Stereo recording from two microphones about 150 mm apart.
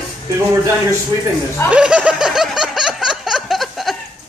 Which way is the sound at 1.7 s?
10° right (ahead or behind).